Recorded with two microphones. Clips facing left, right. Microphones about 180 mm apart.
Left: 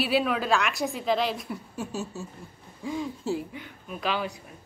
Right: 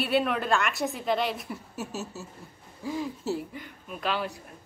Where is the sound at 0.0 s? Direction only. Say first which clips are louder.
Left 1 dB; centre (ahead or behind).